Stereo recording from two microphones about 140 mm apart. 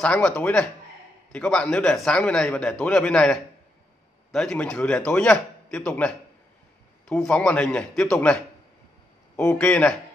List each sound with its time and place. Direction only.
0.0 s a man's voice: 5° left (ahead or behind)
9.4 s a man's voice: 5° left (ahead or behind)